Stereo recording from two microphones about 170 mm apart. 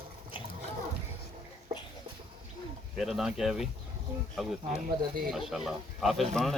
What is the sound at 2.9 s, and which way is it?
Speech, centre (ahead or behind).